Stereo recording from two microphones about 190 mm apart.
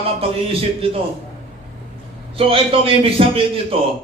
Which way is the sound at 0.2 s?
30° right (ahead or behind).